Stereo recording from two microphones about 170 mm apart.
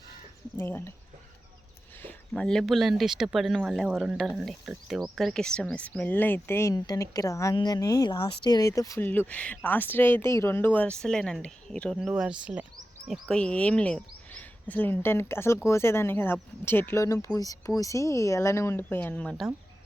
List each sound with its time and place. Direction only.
0.5 s speech: 15° left (ahead or behind)
2.0 s speech: 10° left (ahead or behind)